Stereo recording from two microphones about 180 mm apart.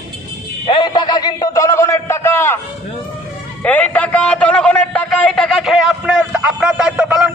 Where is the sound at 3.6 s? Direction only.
10° left (ahead or behind).